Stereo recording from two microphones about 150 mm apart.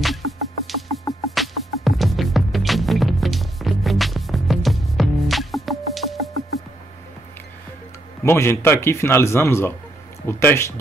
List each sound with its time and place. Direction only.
0.7 s music: centre (ahead or behind)
8.2 s a man's voice: 15° left (ahead or behind)